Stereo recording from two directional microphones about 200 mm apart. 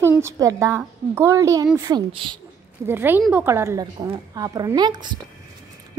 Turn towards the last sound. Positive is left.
turn(degrees=-20)  # may be behind; listen again after turning